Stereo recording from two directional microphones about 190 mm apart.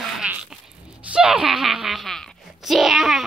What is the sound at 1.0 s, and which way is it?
Speech, 5° right (ahead or behind).